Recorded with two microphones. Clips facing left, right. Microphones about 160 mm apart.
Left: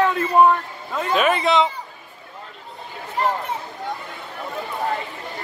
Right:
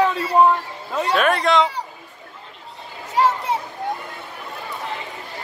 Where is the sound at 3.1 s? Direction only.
85° right.